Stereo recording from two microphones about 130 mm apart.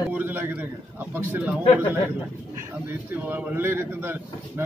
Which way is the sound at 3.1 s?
10° right (ahead or behind).